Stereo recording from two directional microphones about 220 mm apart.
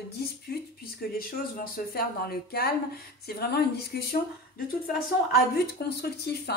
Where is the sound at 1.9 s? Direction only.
45° left (ahead or behind).